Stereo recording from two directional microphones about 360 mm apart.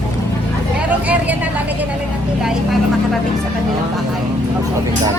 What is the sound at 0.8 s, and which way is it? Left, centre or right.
Speech, centre.